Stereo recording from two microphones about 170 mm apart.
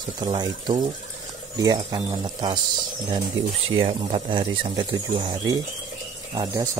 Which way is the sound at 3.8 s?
30° right (ahead or behind).